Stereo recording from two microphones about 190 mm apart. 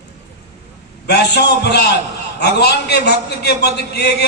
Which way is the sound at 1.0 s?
60° left (ahead or behind).